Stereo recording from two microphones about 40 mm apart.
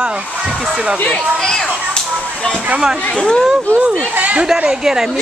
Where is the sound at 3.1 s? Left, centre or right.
Centre.